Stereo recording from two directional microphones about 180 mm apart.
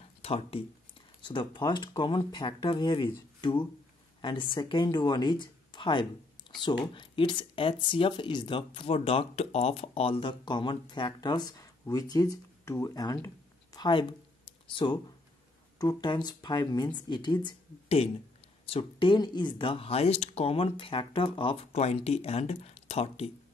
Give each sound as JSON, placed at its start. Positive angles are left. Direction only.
{"t": 0.2, "sound": "speech", "side_deg": 30}